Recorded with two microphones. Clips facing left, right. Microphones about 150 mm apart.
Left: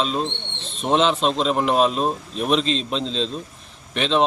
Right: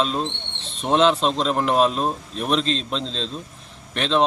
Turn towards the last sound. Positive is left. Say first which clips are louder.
# left 1 dB
turn(degrees=0)  # may be behind; listen again after turning